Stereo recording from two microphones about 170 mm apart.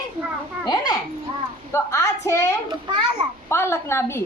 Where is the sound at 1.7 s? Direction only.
15° left (ahead or behind).